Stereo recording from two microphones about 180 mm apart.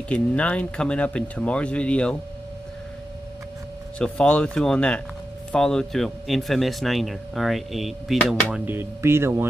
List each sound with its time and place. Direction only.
0.1 s speech: 5° left (ahead or behind)
4.0 s speech: 5° left (ahead or behind)
8.5 s speech: 10° right (ahead or behind)